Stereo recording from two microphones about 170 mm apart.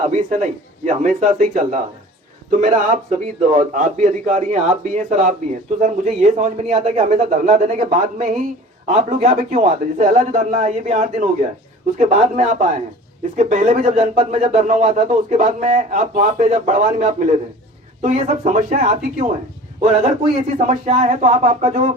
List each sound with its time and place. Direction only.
0.0 s a man's voice: 45° right (ahead or behind)
20.6 s a man's voice: 45° right (ahead or behind)